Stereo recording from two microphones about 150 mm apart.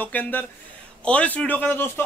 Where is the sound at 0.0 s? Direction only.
10° left (ahead or behind).